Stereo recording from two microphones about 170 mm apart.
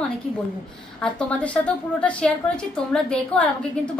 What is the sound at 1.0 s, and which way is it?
A woman's voice, 5° left (ahead or behind).